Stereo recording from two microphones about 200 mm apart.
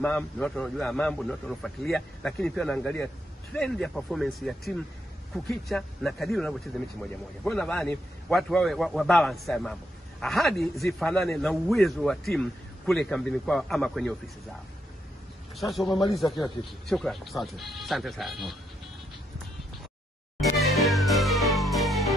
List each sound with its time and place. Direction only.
0.0 s speech: 5° left (ahead or behind)
15.5 s speech: centre (ahead or behind)
15.8 s a man's voice: 20° left (ahead or behind)
16.2 s speech: centre (ahead or behind)
20.3 s music: centre (ahead or behind)